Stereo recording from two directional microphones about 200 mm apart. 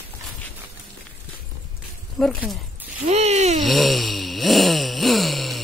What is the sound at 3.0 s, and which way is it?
Speech, 35° right (ahead or behind).